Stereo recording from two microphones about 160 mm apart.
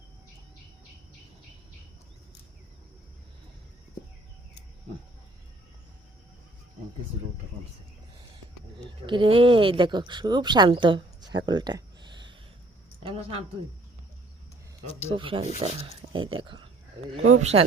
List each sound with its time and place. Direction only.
9.0 s speech: 30° right (ahead or behind)
15.1 s speech: 35° right (ahead or behind)